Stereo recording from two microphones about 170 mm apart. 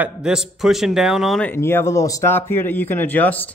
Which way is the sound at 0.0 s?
5° right (ahead or behind).